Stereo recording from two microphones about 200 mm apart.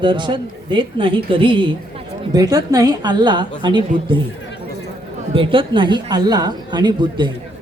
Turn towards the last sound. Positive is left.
turn(degrees=-25)  # may be behind; listen again after turning